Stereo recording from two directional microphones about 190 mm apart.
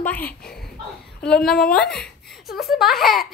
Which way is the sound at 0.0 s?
10° left (ahead or behind).